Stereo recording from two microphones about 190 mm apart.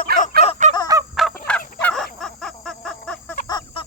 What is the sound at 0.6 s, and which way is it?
Fowl, 40° right (ahead or behind).